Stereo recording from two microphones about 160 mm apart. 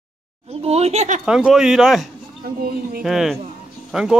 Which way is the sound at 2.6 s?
70° right (ahead or behind).